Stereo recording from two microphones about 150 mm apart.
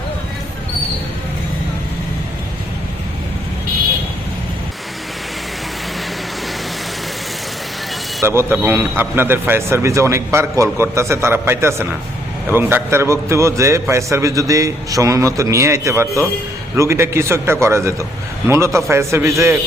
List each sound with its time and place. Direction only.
8.4 s a man's voice: 15° right (ahead or behind)